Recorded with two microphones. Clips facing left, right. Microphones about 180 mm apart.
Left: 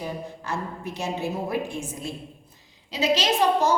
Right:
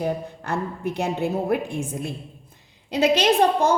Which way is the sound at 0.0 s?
60° right (ahead or behind).